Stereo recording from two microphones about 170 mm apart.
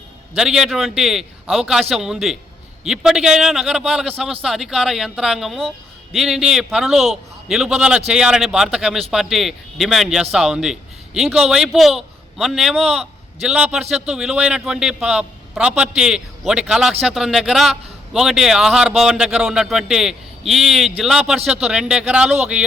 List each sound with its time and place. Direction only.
0.3 s a man's voice: 5° right (ahead or behind)